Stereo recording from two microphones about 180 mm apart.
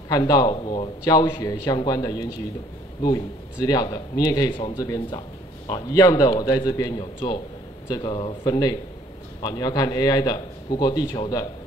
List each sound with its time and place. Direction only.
0.1 s a man's voice: 25° left (ahead or behind)
3.6 s a man's voice: 20° left (ahead or behind)
4.7 s a man's voice: 20° left (ahead or behind)